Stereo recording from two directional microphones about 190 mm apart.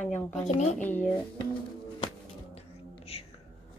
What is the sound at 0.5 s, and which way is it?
Speech, 35° left (ahead or behind).